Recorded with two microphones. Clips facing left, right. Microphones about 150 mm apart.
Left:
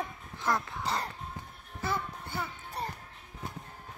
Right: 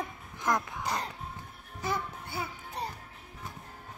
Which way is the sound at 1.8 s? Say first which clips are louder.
Even; 15° right (ahead or behind).